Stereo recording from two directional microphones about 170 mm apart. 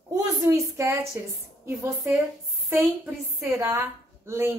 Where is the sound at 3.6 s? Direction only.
15° right (ahead or behind).